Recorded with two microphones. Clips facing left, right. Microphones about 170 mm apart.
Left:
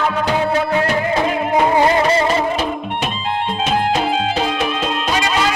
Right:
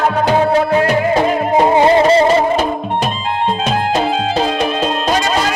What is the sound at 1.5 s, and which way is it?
Music, 25° right (ahead or behind).